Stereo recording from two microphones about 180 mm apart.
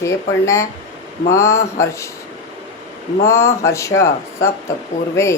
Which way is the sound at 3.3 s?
15° left (ahead or behind).